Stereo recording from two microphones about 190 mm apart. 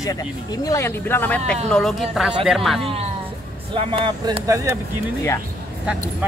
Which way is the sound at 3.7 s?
30° right (ahead or behind).